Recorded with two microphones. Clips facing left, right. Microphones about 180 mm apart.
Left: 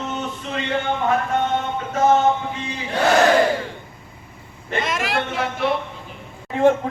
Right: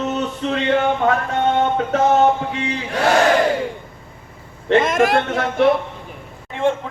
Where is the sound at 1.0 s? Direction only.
80° right.